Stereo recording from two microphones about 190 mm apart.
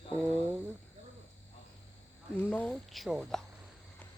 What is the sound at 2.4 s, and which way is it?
Speech, 10° left (ahead or behind).